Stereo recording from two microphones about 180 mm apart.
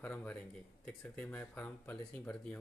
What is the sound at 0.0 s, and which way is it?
Speech, 10° left (ahead or behind).